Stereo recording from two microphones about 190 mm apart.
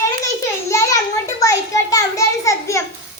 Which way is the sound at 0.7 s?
15° left (ahead or behind).